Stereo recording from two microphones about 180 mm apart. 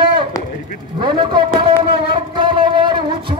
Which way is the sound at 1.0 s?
25° right (ahead or behind).